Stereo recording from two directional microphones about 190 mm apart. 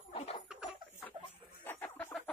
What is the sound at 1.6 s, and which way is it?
Chicken, 10° left (ahead or behind).